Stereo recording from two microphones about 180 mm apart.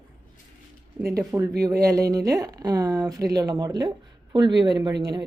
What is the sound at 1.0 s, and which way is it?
A woman's voice, 15° right (ahead or behind).